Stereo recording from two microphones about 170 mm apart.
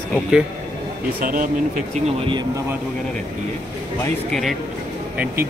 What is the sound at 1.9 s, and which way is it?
Speech, 35° right (ahead or behind).